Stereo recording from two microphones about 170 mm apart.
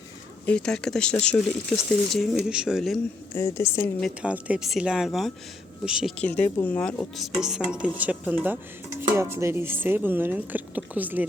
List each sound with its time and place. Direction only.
0.4 s speech: 5° left (ahead or behind)
3.3 s speech: 15° left (ahead or behind)
4.0 s speech: 5° right (ahead or behind)
6.1 s speech: 10° left (ahead or behind)
7.7 s dishes: 10° right (ahead or behind)